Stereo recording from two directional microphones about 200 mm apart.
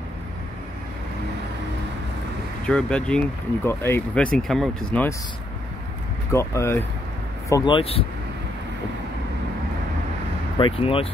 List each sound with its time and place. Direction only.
2.6 s speech: 5° left (ahead or behind)
6.3 s speech: 15° left (ahead or behind)
10.6 s speech: 30° left (ahead or behind)